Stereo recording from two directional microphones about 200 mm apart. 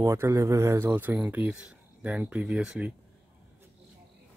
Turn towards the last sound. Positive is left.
turn(degrees=-5)  # may be behind; listen again after turning